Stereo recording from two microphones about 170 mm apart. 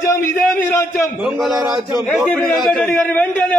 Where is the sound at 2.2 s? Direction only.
5° left (ahead or behind).